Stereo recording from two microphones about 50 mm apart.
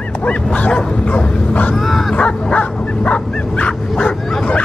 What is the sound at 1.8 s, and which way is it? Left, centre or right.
Bow-wow, centre.